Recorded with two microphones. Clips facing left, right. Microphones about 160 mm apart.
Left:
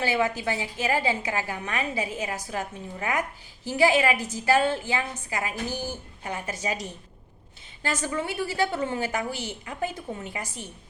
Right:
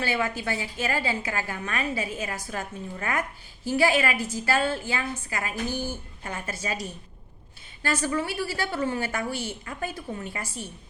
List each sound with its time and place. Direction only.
0.0 s a woman's voice: 20° left (ahead or behind)